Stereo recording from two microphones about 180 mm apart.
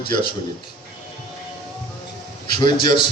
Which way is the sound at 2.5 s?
25° left (ahead or behind).